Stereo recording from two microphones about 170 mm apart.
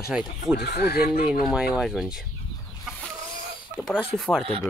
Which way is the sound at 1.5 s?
Centre (ahead or behind).